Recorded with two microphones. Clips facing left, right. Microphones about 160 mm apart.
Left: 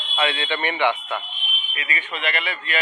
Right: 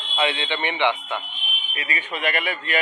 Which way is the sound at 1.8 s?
40° right (ahead or behind).